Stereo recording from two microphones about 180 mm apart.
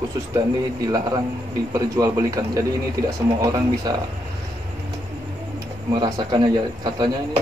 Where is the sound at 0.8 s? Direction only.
20° right (ahead or behind).